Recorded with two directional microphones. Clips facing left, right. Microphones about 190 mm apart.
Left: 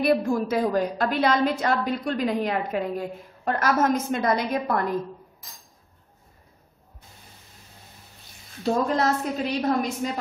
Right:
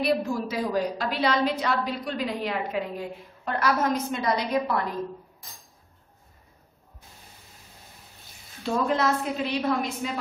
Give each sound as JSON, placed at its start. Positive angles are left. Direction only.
{"t": 0.0, "sound": "a woman's voice", "side_deg": 50}
{"t": 8.6, "sound": "a woman's voice", "side_deg": 40}